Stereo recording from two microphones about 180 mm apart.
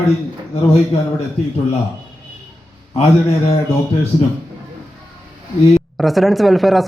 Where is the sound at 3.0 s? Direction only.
35° left (ahead or behind).